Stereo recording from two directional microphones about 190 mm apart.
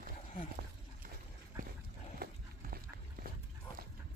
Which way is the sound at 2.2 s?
55° right (ahead or behind).